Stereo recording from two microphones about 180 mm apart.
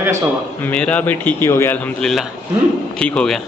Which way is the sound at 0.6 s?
5° left (ahead or behind).